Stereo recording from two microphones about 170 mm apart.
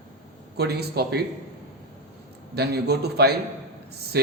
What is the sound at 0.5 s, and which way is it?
Speech, 70° right (ahead or behind).